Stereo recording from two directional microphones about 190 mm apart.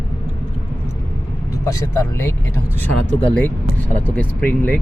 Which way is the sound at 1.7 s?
15° left (ahead or behind).